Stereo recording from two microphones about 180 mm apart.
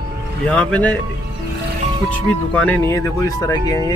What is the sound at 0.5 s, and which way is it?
Speech, 5° left (ahead or behind).